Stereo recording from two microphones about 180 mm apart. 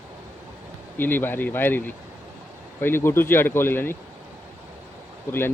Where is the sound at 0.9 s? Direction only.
10° left (ahead or behind).